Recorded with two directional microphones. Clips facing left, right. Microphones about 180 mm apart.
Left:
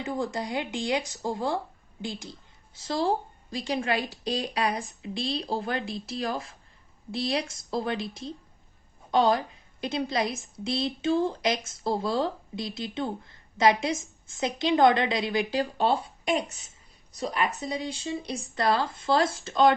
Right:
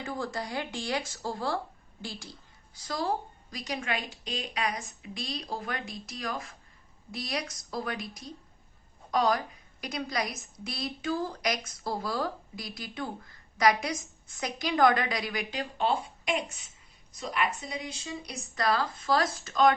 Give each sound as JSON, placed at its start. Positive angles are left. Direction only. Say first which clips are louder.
{"t": 0.0, "sound": "a woman's voice", "louder": "left 4 dB", "side_deg": 20}